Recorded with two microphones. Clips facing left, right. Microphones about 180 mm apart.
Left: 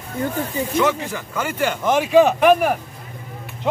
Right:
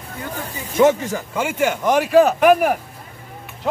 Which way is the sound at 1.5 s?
5° right (ahead or behind).